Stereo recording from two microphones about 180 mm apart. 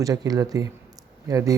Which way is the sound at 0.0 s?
20° right (ahead or behind).